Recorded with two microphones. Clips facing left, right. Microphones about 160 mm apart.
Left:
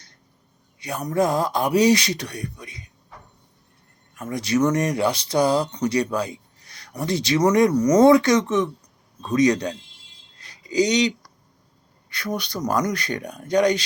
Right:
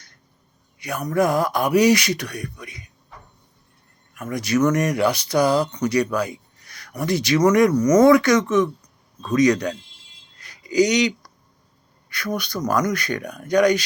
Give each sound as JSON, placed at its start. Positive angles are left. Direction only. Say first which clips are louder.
{"t": 0.8, "sound": "speech", "louder": "right 1 dB", "side_deg": 30}
{"t": 4.1, "sound": "speech", "louder": "right 1 dB", "side_deg": 25}
{"t": 10.3, "sound": "a sound", "louder": "right 3 dB", "side_deg": 30}
{"t": 12.0, "sound": "speech", "louder": "right 1 dB", "side_deg": 30}